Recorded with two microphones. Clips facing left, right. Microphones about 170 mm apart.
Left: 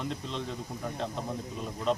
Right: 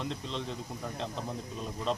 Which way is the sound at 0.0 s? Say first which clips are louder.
Left 1 dB; centre (ahead or behind).